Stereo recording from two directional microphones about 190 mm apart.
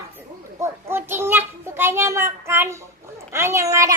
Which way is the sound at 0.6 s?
10° right (ahead or behind).